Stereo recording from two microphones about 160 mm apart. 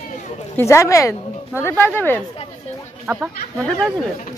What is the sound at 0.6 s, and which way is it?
Speech, 15° left (ahead or behind).